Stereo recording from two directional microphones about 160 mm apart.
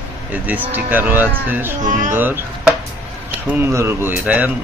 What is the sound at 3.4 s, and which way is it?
Speech, 15° right (ahead or behind).